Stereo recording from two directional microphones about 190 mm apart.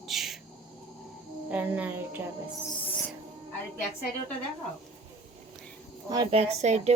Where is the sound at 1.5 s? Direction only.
10° right (ahead or behind).